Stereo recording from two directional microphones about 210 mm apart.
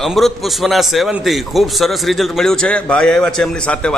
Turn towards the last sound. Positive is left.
turn(degrees=5)  # may be behind; listen again after turning